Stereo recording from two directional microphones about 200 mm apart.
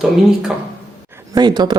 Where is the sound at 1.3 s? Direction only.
20° right (ahead or behind).